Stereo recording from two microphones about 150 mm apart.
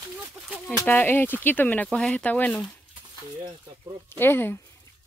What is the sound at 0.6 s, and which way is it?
Speech, 15° left (ahead or behind).